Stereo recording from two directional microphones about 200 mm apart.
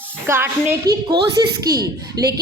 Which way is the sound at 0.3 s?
10° right (ahead or behind).